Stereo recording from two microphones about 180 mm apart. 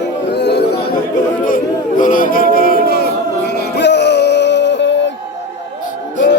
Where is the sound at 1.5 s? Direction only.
50° left (ahead or behind).